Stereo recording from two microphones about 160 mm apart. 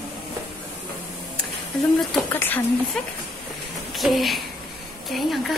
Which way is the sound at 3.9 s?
Centre (ahead or behind).